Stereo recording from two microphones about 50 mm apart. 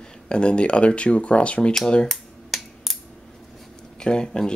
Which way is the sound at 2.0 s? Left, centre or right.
Centre.